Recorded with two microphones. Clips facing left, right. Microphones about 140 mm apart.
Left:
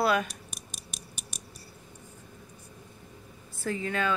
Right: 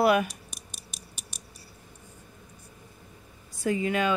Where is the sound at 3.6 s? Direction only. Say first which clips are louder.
Right 4 dB; 10° right (ahead or behind).